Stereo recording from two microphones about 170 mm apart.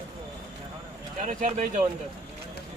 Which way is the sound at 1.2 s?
50° right (ahead or behind).